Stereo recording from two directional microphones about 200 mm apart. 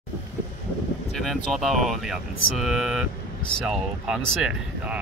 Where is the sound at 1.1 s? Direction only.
Centre (ahead or behind).